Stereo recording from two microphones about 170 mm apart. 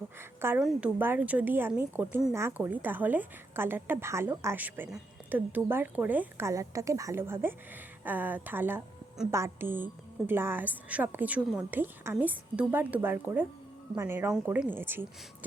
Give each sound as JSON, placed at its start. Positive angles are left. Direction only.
{"t": 0.4, "sound": "a woman's voice", "side_deg": -10}